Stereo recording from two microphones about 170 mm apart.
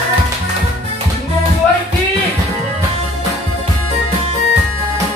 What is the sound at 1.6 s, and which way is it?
Music, 5° left (ahead or behind).